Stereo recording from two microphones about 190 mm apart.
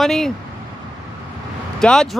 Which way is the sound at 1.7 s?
5° left (ahead or behind).